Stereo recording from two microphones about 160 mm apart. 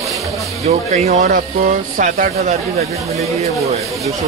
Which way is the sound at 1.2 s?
55° right (ahead or behind).